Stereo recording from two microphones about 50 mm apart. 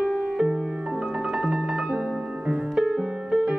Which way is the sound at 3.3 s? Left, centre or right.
Centre.